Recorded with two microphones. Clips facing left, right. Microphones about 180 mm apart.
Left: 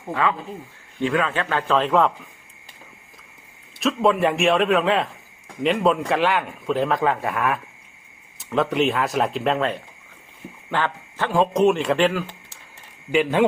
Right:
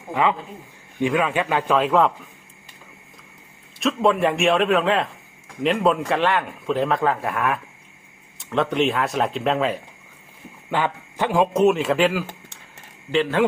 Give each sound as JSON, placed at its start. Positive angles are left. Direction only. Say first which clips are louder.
{"t": 0.1, "sound": "a man's voice", "louder": "right 2 dB", "side_deg": -20}
{"t": 1.9, "sound": "a man's voice", "louder": "even", "side_deg": 0}
{"t": 3.8, "sound": "a man's voice", "louder": "even", "side_deg": 0}
{"t": 13.1, "sound": "speech", "louder": "left 1 dB", "side_deg": 10}